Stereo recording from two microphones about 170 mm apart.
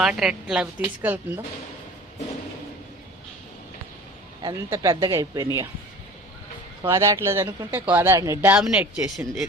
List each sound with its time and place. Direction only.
0.0 s a woman's voice: 5° right (ahead or behind)
4.7 s speech: 20° right (ahead or behind)
6.8 s speech: 15° right (ahead or behind); by 9.5 s centre (ahead or behind)